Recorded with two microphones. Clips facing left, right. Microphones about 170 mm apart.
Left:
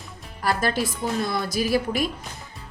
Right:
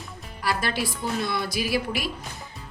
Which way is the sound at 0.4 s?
45° left (ahead or behind).